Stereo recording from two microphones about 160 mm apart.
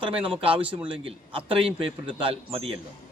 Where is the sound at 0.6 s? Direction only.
10° right (ahead or behind).